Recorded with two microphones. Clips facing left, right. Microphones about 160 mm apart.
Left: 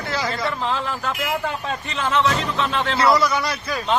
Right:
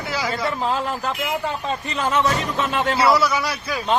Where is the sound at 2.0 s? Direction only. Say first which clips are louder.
Even; 45° right (ahead or behind).